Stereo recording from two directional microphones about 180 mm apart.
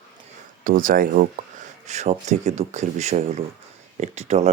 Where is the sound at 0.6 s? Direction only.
50° right (ahead or behind).